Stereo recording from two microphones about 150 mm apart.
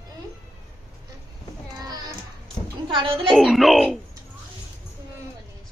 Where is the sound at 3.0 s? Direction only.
40° right (ahead or behind).